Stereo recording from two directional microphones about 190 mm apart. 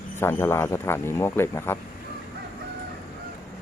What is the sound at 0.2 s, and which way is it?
Speech, 15° left (ahead or behind).